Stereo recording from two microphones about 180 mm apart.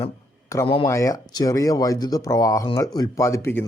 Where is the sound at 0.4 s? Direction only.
15° left (ahead or behind).